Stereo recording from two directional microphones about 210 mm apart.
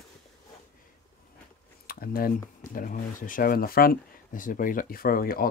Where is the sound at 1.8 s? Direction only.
45° left (ahead or behind).